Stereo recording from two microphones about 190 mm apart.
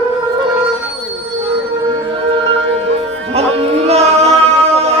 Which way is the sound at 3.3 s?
35° right (ahead or behind).